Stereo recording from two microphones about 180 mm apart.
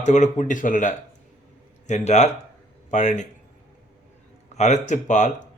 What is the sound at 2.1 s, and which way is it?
Speech, 40° left (ahead or behind).